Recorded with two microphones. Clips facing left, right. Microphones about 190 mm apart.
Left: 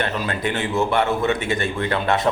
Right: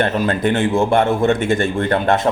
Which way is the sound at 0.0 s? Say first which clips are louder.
Right 7 dB; 50° right (ahead or behind).